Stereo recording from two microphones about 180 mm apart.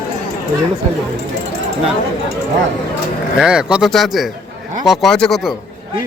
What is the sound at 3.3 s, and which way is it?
Speech, 5° right (ahead or behind).